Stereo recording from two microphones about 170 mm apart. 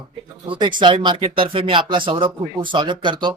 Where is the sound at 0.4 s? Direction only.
30° right (ahead or behind).